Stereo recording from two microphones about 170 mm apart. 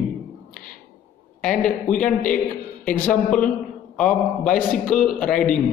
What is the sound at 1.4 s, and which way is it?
A man's voice, 5° left (ahead or behind).